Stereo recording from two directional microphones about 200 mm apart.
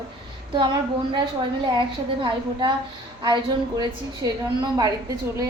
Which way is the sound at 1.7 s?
25° right (ahead or behind).